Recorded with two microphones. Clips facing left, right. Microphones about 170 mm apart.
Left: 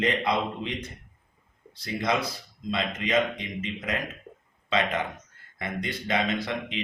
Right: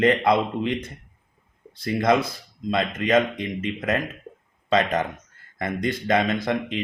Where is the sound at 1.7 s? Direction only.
50° right (ahead or behind).